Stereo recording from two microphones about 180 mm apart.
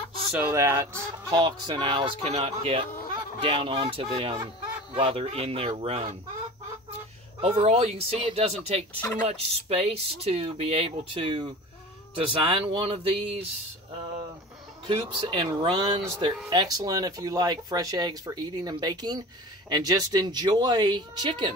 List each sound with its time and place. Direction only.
0.3 s speech: 10° right (ahead or behind); by 6.1 s 30° right (ahead or behind)
7.4 s speech: 35° right (ahead or behind)
14.9 s speech: 25° right (ahead or behind)